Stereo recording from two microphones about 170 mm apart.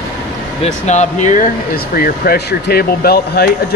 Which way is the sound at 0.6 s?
45° left (ahead or behind).